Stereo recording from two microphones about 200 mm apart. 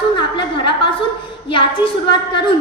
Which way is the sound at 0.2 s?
25° left (ahead or behind).